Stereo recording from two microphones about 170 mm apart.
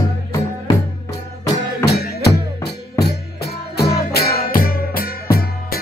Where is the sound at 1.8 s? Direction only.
70° left (ahead or behind).